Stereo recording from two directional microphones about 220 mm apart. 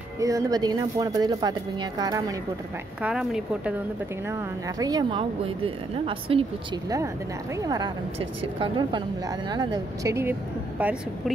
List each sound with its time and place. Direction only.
0.2 s speech: 15° right (ahead or behind)
3.0 s a woman's voice: 5° right (ahead or behind)
4.3 s a woman's voice: 15° right (ahead or behind)